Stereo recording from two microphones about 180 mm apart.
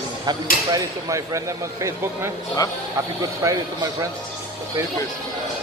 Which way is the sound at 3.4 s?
20° right (ahead or behind).